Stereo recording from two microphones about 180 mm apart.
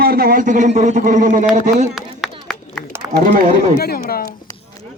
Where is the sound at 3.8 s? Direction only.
55° left (ahead or behind).